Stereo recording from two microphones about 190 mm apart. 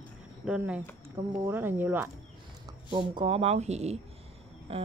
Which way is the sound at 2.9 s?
25° right (ahead or behind).